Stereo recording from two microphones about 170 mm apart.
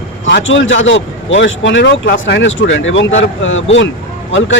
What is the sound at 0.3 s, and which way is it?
A man's voice, 90° left.